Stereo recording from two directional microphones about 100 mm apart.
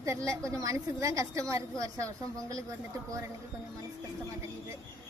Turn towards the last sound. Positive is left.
turn(degrees=-35)  # may be behind; listen again after turning